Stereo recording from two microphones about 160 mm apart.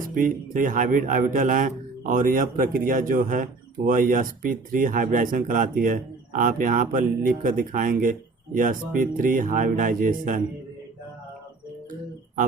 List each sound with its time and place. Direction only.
0.0 s a man's voice: 60° right (ahead or behind)